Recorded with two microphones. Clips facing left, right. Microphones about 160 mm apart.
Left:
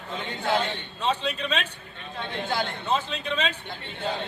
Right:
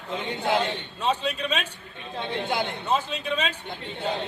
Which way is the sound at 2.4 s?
20° right (ahead or behind).